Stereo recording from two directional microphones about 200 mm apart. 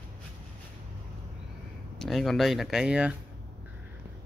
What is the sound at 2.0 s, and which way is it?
Speech, centre (ahead or behind).